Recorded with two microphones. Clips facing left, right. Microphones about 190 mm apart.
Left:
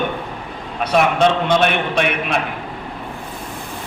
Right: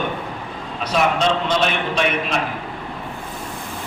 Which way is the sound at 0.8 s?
60° left (ahead or behind).